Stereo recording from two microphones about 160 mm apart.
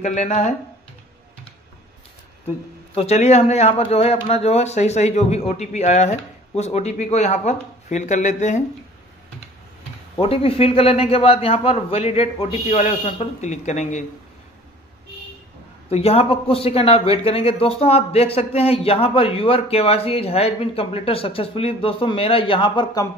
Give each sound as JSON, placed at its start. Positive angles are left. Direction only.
{"t": 0.0, "sound": "a man's voice", "side_deg": 45}
{"t": 2.4, "sound": "a man's voice", "side_deg": 40}
{"t": 10.2, "sound": "a man's voice", "side_deg": 35}
{"t": 15.9, "sound": "speech", "side_deg": 40}